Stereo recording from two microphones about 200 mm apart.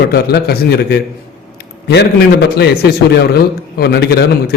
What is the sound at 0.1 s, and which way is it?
Speech, 50° left (ahead or behind).